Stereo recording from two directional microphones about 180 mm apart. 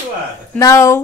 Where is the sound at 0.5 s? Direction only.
15° left (ahead or behind).